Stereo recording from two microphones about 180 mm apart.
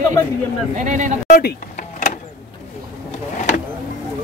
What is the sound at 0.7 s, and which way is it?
Speech, 45° right (ahead or behind).